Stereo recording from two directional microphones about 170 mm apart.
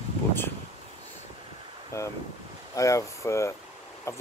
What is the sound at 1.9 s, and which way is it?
Speech, 15° left (ahead or behind).